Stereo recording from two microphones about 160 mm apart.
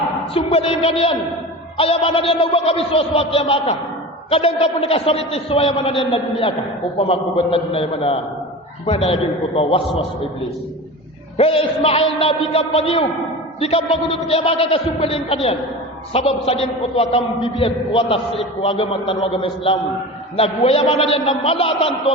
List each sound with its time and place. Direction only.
0.3 s a sound: 35° left (ahead or behind)
1.8 s a man's voice: 40° left (ahead or behind)
9.6 s a man's voice: 35° left (ahead or behind)
11.3 s a man's voice: 35° left (ahead or behind)